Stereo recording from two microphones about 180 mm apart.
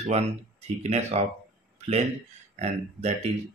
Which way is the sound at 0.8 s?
35° right (ahead or behind).